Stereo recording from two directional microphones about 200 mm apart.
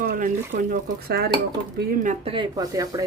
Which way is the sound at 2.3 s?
20° right (ahead or behind).